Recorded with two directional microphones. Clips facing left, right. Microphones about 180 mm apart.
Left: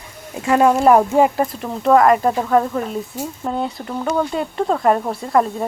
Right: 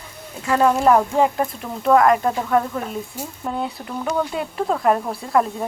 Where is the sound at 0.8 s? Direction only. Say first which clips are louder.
Left 3 dB; 20° left (ahead or behind).